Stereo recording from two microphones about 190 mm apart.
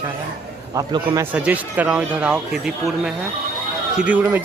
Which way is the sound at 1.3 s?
5° right (ahead or behind).